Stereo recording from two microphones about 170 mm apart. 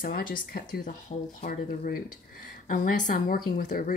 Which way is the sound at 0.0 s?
55° left (ahead or behind).